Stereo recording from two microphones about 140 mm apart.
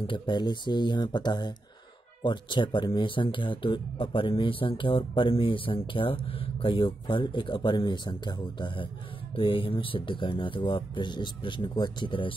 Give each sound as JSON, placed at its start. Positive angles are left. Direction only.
{"t": 0.0, "sound": "speech", "side_deg": 35}